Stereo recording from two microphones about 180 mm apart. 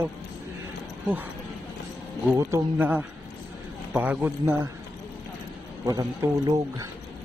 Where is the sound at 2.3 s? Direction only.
15° right (ahead or behind).